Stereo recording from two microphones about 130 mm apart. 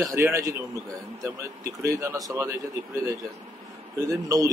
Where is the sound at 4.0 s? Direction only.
25° right (ahead or behind).